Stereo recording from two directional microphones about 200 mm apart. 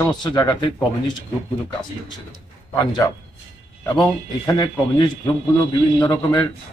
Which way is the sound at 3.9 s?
20° left (ahead or behind).